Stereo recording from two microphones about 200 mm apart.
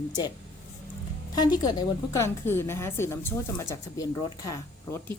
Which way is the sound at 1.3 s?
20° left (ahead or behind).